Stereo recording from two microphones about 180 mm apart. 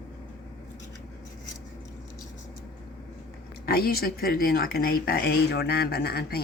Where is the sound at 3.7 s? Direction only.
60° left (ahead or behind).